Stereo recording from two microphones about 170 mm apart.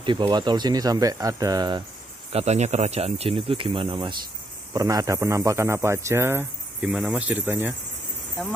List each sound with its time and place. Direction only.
0.0 s speech: 30° right (ahead or behind)
2.3 s speech: 40° right (ahead or behind)
4.7 s speech: 20° right (ahead or behind)
6.8 s speech: 5° right (ahead or behind)